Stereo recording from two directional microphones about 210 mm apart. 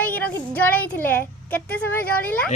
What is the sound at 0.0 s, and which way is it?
A woman's voice, 10° left (ahead or behind).